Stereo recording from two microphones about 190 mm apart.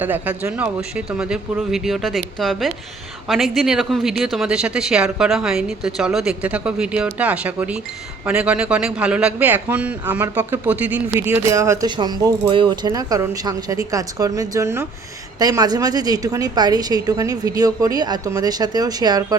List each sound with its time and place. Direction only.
0.0 s a man's voice: 10° right (ahead or behind)